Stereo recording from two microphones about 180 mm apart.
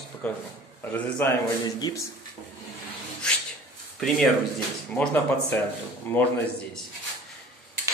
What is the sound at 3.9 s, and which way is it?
Speech, centre (ahead or behind).